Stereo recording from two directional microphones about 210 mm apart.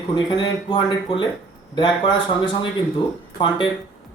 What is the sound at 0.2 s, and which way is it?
Speech, 20° left (ahead or behind).